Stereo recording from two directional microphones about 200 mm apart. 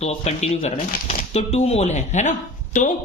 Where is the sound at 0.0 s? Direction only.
30° left (ahead or behind).